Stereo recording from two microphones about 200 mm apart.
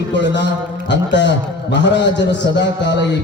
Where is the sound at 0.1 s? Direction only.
65° left (ahead or behind).